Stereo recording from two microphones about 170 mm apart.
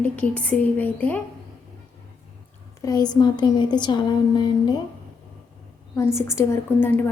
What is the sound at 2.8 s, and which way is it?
A woman's voice, 20° left (ahead or behind).